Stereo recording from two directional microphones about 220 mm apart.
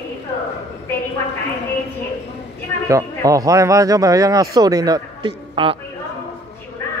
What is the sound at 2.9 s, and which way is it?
Speech, 15° right (ahead or behind).